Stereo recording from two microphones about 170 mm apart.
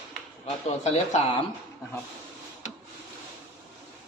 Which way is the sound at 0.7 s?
40° left (ahead or behind).